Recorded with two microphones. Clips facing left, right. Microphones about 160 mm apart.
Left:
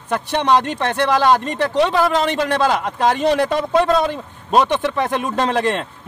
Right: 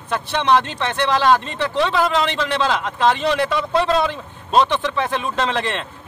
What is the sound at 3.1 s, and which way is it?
Speech, 45° left (ahead or behind).